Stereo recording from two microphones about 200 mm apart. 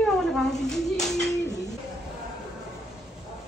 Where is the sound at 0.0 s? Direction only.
Centre (ahead or behind).